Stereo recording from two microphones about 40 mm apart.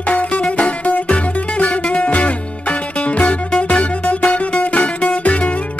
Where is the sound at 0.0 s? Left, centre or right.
Left.